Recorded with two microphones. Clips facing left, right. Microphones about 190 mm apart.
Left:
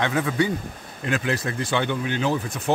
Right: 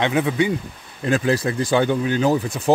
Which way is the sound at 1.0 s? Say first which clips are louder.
Right 6 dB; 35° right (ahead or behind).